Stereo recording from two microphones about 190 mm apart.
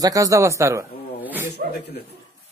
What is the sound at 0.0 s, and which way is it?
Speech, 15° right (ahead or behind).